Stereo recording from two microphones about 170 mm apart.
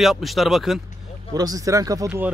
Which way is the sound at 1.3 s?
20° right (ahead or behind).